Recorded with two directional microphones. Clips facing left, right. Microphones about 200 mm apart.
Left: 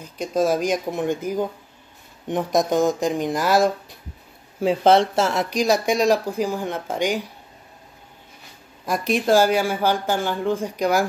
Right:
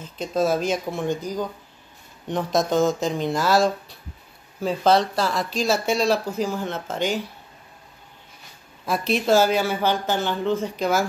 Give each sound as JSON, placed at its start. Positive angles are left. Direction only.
{"t": 0.0, "sound": "speech", "side_deg": 10}
{"t": 8.8, "sound": "speech", "side_deg": 15}